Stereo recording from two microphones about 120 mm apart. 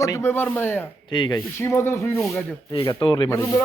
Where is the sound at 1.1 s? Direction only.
40° left (ahead or behind).